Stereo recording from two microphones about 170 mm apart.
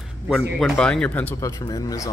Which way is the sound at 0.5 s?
Centre (ahead or behind).